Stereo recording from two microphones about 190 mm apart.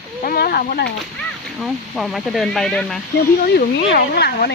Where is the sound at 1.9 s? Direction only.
Centre (ahead or behind).